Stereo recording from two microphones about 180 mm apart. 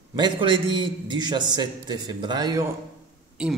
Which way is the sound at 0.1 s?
25° right (ahead or behind).